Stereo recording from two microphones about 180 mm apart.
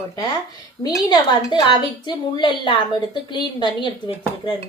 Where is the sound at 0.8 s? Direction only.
20° left (ahead or behind).